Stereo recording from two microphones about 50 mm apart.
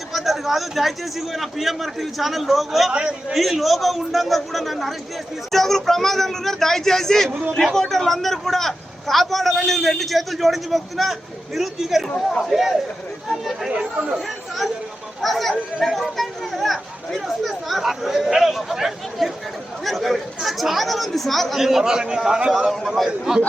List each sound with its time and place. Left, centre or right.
0.1 s a man's voice: centre
2.9 s speech: right
3.3 s a man's voice: centre
7.3 s a man's voice: right
7.5 s a man's voice: centre
13.7 s speech: centre
14.2 s a man's voice: centre